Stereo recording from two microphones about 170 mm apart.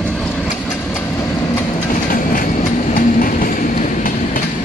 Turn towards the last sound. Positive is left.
turn(degrees=55)  # may be behind; listen again after turning